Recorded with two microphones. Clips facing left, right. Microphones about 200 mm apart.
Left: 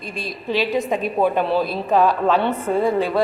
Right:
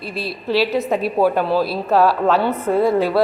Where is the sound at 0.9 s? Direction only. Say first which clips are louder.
Right 3 dB; 5° right (ahead or behind).